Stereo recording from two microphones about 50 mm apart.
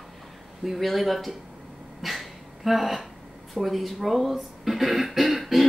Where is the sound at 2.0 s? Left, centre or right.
Centre.